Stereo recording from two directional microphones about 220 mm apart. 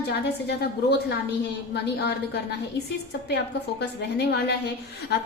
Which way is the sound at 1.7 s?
50° left (ahead or behind).